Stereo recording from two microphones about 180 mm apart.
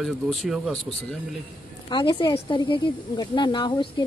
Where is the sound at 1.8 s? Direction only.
25° left (ahead or behind).